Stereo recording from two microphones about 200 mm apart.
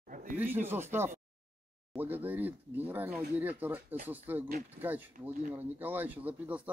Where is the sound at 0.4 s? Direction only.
10° right (ahead or behind).